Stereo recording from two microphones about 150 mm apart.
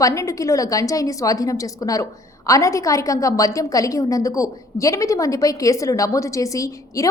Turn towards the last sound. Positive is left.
turn(degrees=20)  # may be behind; listen again after turning